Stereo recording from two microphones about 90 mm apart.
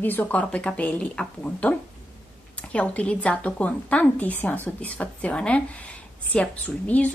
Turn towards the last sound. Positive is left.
turn(degrees=15)  # may be behind; listen again after turning